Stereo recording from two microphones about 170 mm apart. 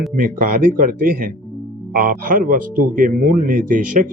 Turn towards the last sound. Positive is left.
turn(degrees=-55)  # may be behind; listen again after turning